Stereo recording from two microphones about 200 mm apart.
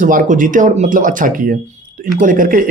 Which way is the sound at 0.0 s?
40° right (ahead or behind).